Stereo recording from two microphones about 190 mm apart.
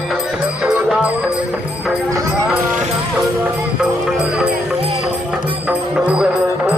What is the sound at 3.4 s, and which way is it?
Music, 5° right (ahead or behind).